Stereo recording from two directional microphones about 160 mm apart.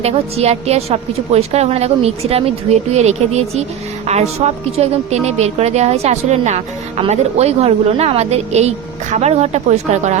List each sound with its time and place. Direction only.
0.0 s a woman's voice: 40° right (ahead or behind)